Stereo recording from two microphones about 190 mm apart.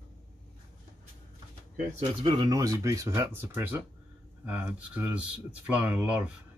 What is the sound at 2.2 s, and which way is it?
Speech, 25° right (ahead or behind).